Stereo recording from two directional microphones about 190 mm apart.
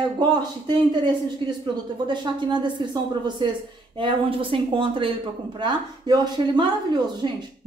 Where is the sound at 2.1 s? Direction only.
25° right (ahead or behind).